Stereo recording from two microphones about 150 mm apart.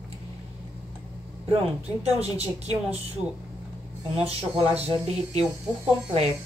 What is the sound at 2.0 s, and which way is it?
Speech, 45° right (ahead or behind).